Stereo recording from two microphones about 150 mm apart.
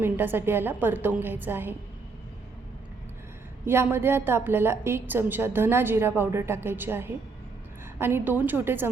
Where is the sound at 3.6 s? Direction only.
15° right (ahead or behind).